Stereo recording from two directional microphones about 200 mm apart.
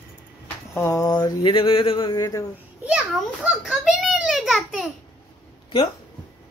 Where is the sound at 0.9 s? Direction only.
15° left (ahead or behind).